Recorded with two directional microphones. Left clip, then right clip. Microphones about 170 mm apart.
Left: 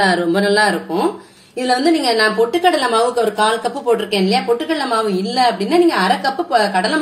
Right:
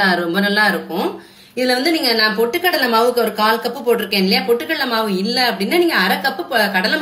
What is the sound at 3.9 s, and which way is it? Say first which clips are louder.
A woman's voice: even; 45° left (ahead or behind).